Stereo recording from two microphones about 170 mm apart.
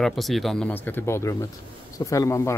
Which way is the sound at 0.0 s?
Centre (ahead or behind).